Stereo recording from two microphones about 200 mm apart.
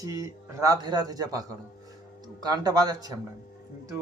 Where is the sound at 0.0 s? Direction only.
15° right (ahead or behind).